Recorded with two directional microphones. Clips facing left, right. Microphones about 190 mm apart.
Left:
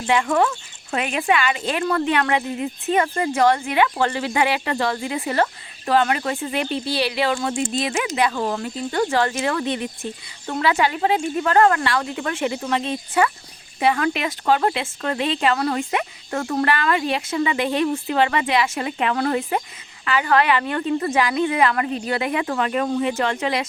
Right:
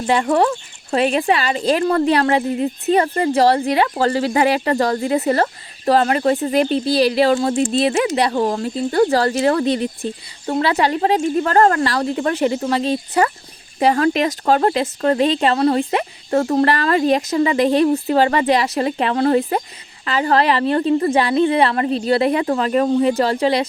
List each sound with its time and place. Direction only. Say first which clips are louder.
0.1 s speech: right 3 dB; 35° right (ahead or behind)